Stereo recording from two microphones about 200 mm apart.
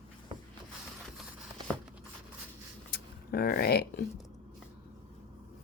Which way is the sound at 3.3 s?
50° left (ahead or behind).